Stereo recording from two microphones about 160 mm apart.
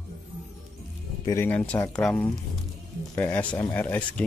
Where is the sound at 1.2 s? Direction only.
15° left (ahead or behind).